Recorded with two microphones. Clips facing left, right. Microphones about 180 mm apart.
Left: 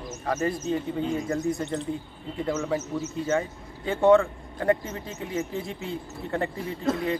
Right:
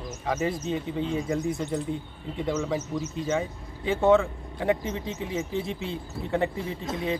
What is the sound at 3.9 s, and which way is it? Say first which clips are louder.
Speech: left 2 dB; centre (ahead or behind).